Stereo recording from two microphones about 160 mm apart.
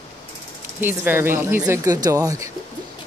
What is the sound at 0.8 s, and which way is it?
A woman's voice, 15° right (ahead or behind).